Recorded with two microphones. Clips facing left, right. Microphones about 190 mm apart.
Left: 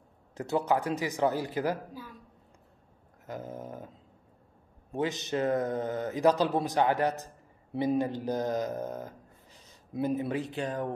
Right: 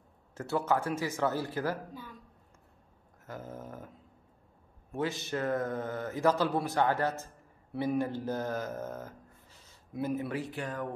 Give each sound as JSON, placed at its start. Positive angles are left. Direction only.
{"t": 0.3, "sound": "a man's voice", "side_deg": 15}
{"t": 3.3, "sound": "a sound", "side_deg": 15}
{"t": 4.9, "sound": "a man's voice", "side_deg": 20}